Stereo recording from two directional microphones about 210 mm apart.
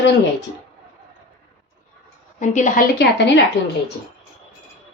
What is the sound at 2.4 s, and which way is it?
Speech, 35° left (ahead or behind).